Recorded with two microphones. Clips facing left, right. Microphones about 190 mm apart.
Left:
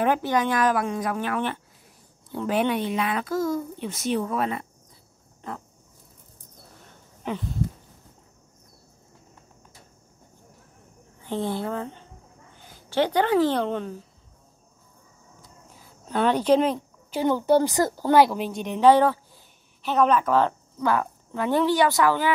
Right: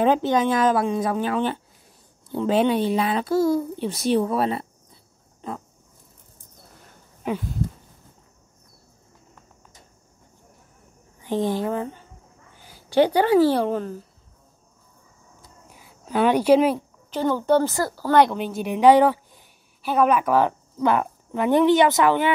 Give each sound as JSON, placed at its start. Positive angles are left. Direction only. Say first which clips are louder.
{"t": 0.0, "sound": "a woman's voice", "louder": "right 3 dB", "side_deg": -20}
{"t": 7.2, "sound": "a woman's voice", "louder": "right 4 dB", "side_deg": -10}
{"t": 11.2, "sound": "a woman's voice", "louder": "right 4 dB", "side_deg": -15}
{"t": 15.7, "sound": "speech", "louder": "right 3 dB", "side_deg": -10}
{"t": 17.1, "sound": "speech", "louder": "even", "side_deg": 15}
{"t": 18.1, "sound": "a woman's voice", "louder": "right 1 dB", "side_deg": 5}